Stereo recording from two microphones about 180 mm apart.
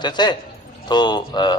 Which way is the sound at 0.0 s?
25° left (ahead or behind).